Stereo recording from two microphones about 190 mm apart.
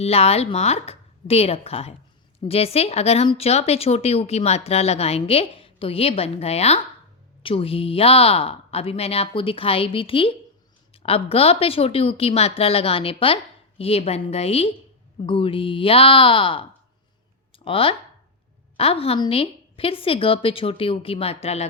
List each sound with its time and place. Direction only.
0.0 s speech: 30° left (ahead or behind)
17.7 s speech: 30° left (ahead or behind)